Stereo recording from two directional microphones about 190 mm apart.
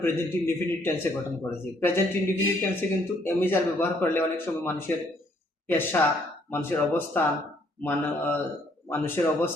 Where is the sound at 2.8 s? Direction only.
10° left (ahead or behind).